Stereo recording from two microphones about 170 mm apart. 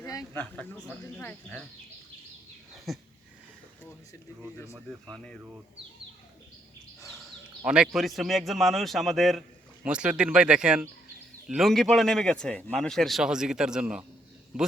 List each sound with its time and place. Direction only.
0.0 s a sound: 20° left (ahead or behind)
0.3 s speech: 10° left (ahead or behind)
2.7 s dog: centre (ahead or behind)
7.2 s a man's voice: 5° right (ahead or behind)